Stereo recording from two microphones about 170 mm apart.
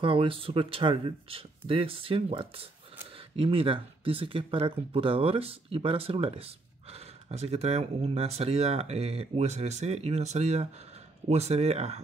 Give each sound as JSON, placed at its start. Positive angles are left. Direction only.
{"t": 0.0, "sound": "speech", "side_deg": -30}